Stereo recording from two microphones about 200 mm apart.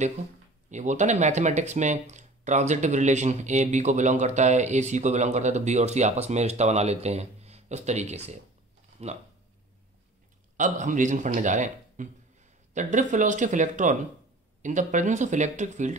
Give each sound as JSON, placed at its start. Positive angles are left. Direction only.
{"t": 0.7, "sound": "speech", "side_deg": -35}
{"t": 10.6, "sound": "a man's voice", "side_deg": -40}